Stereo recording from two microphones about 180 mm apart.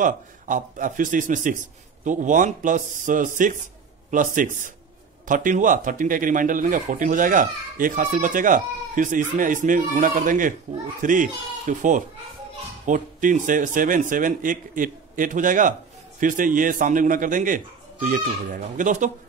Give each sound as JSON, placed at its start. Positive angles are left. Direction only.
{"t": 0.0, "sound": "speech", "side_deg": -45}